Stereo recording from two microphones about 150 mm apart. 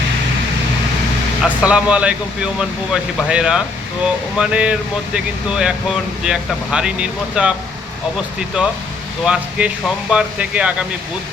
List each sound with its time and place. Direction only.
1.6 s speech: 10° right (ahead or behind)
8.6 s speech: 5° right (ahead or behind)